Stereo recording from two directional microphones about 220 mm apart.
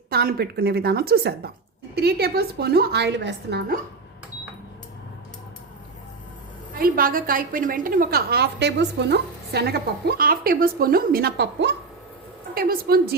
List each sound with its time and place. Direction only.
0.1 s a woman's voice: 45° right (ahead or behind)
6.7 s a woman's voice: 40° right (ahead or behind)